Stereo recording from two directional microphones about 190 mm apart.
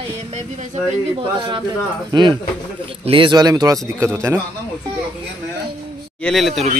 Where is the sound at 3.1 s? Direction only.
25° right (ahead or behind).